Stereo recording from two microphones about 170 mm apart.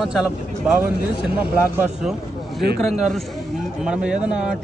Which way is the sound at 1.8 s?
5° right (ahead or behind).